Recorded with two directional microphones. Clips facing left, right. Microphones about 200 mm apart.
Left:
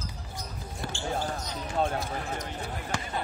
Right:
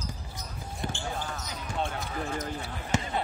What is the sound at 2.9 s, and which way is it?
Basketball bounce, 20° right (ahead or behind).